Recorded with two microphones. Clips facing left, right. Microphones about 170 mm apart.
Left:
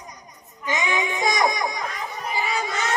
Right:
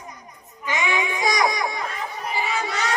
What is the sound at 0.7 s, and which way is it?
Child singing, 20° left (ahead or behind).